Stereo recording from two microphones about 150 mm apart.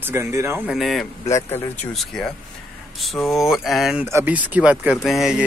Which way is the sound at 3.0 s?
Centre (ahead or behind).